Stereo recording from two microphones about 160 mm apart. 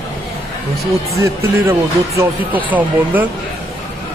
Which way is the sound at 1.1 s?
20° right (ahead or behind).